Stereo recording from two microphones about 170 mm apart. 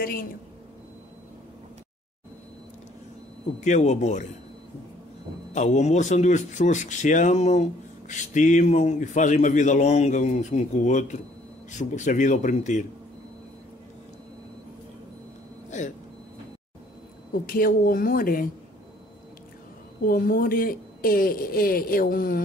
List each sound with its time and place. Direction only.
0.0 s a woman's voice: 60° left (ahead or behind)
3.6 s speech: 45° left (ahead or behind)
5.5 s speech: 45° left (ahead or behind)
17.3 s a woman's voice: 55° left (ahead or behind)
20.1 s a woman's voice: 60° left (ahead or behind)